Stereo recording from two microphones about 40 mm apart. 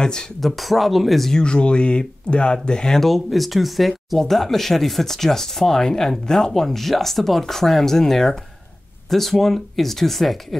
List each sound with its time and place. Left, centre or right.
0.0 s speech: centre
0.4 s speech: centre
1.3 s speech: left
3.1 s speech: centre